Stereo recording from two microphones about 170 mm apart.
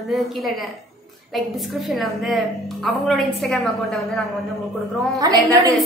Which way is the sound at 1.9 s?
Centre (ahead or behind).